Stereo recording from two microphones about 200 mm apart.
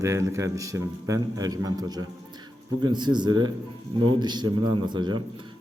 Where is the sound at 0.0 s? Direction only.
15° right (ahead or behind).